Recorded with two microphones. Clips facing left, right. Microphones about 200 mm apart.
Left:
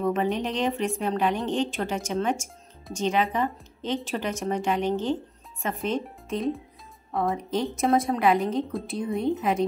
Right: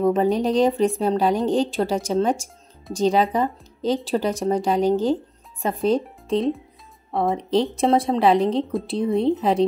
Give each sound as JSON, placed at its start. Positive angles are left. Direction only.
{"t": 0.0, "sound": "a woman's voice", "side_deg": -35}